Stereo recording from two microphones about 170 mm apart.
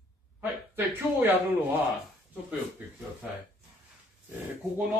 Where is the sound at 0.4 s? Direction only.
10° right (ahead or behind).